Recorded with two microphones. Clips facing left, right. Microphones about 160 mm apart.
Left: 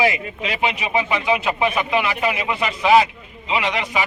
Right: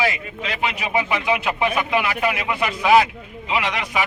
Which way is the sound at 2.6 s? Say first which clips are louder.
Even; 5° right (ahead or behind).